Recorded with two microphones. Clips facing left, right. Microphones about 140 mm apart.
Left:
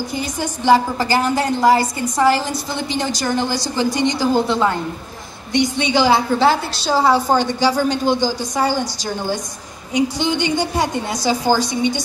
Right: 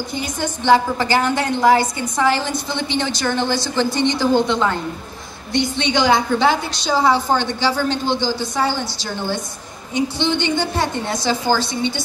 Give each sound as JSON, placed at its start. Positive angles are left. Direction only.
{"t": 0.1, "sound": "a woman's voice", "side_deg": 10}